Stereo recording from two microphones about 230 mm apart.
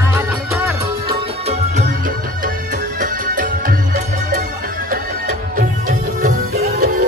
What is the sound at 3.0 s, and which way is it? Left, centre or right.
Music, right.